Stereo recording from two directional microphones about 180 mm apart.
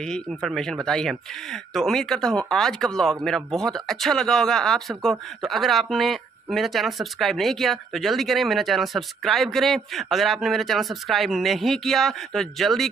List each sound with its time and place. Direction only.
0.0 s speech: centre (ahead or behind)